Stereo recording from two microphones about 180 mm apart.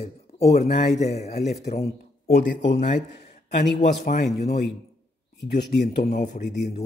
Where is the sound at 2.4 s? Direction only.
45° left (ahead or behind).